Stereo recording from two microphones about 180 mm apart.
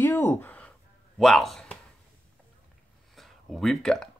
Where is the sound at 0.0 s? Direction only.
15° left (ahead or behind).